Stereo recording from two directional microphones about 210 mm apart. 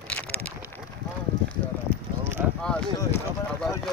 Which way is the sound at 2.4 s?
10° right (ahead or behind).